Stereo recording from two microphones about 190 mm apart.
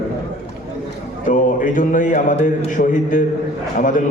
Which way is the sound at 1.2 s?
40° left (ahead or behind).